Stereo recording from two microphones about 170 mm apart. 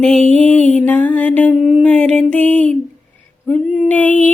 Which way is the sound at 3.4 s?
5° left (ahead or behind).